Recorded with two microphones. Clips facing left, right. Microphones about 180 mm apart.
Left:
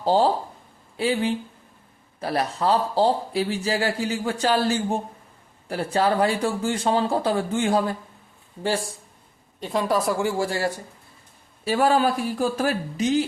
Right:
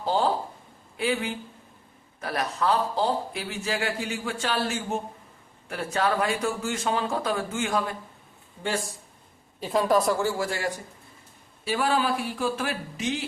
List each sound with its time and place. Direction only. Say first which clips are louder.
0.0 s speech: left 5 dB; 35° left (ahead or behind)
9.6 s a woman's voice: right 1 dB; centre (ahead or behind)
10.3 s speech: left 5 dB; 30° left (ahead or behind)
11.6 s speech: left 5 dB; 45° left (ahead or behind)